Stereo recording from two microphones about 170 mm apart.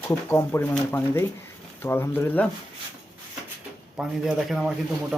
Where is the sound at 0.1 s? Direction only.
15° left (ahead or behind).